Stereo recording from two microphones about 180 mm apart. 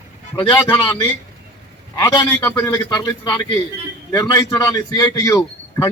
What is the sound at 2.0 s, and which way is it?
A man's voice, 20° left (ahead or behind).